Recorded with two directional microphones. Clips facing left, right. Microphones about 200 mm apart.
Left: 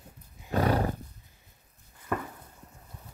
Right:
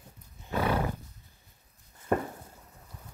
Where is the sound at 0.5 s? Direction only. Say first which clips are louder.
Left 2 dB; 40° left (ahead or behind).